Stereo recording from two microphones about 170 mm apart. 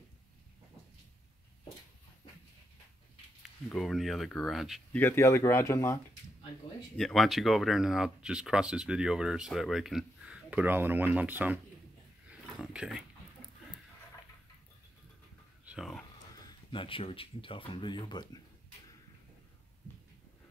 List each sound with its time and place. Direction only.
3.6 s speech: centre (ahead or behind)
4.9 s speech: 15° left (ahead or behind)
7.0 s speech: centre (ahead or behind)
12.3 s a sound: 5° right (ahead or behind)
15.6 s a sound: 5° right (ahead or behind)
16.3 s speech: 30° left (ahead or behind)